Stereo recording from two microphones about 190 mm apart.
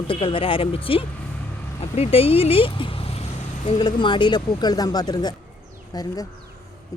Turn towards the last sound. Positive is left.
turn(degrees=20)  # may be behind; listen again after turning